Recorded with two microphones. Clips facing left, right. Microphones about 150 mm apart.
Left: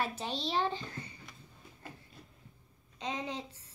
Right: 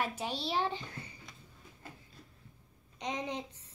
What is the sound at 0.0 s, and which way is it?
A child's voice, 10° right (ahead or behind).